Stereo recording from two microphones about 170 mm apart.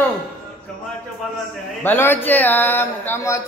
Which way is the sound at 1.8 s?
10° left (ahead or behind).